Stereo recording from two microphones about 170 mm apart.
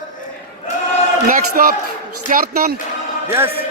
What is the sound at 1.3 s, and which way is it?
A man's voice, 55° right (ahead or behind).